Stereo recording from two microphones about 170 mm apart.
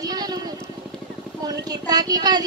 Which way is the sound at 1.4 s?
25° right (ahead or behind).